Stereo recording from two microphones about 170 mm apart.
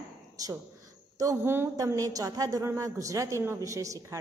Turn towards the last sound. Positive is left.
turn(degrees=-20)  # may be behind; listen again after turning